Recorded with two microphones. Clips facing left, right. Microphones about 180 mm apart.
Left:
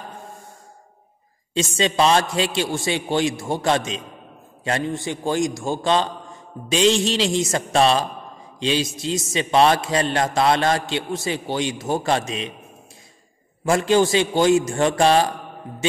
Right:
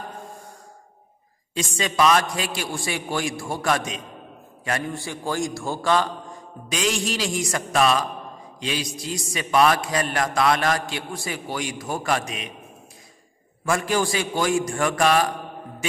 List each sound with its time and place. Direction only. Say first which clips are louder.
1.5 s a man's voice: left 5 dB; 25° left (ahead or behind)
13.7 s a man's voice: left 6 dB; 25° left (ahead or behind)
15.8 s music: left 6 dB; 25° left (ahead or behind)